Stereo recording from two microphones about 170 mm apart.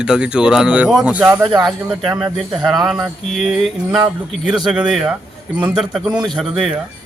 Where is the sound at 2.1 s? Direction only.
20° right (ahead or behind).